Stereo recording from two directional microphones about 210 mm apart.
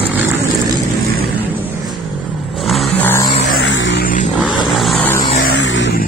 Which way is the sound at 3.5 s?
60° left (ahead or behind).